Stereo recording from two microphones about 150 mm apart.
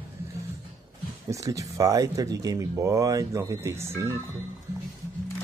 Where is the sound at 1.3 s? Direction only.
20° right (ahead or behind).